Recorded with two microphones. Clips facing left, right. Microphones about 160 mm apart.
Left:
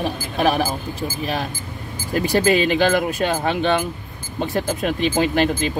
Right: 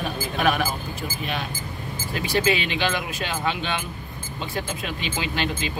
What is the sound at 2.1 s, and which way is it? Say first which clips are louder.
Speech: left 6 dB; 45° left (ahead or behind).